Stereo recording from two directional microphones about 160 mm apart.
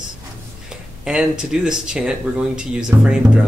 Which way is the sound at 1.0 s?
5° right (ahead or behind).